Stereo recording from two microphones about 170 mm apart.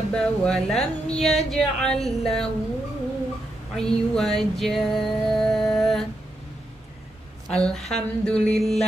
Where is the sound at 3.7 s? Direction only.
5° left (ahead or behind).